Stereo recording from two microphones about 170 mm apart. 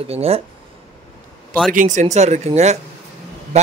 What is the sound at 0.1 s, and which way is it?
Speech, 35° right (ahead or behind).